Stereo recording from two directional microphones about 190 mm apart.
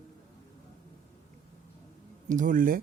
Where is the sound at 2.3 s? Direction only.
45° right (ahead or behind).